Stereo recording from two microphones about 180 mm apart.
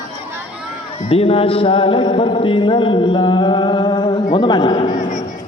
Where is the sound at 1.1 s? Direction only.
35° left (ahead or behind).